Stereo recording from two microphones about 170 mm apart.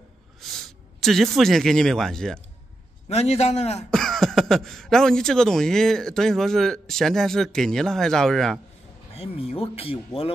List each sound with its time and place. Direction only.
0.4 s speech: centre (ahead or behind)
3.1 s speech: 40° left (ahead or behind)
3.9 s speech: centre (ahead or behind)
9.1 s speech: 35° left (ahead or behind)